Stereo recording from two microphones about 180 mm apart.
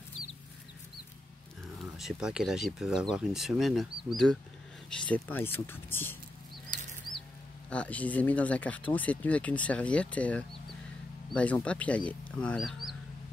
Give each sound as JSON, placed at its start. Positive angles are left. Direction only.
{"t": 2.0, "sound": "speech", "side_deg": -5}
{"t": 6.7, "sound": "bird flight", "side_deg": -50}
{"t": 7.7, "sound": "speech", "side_deg": 5}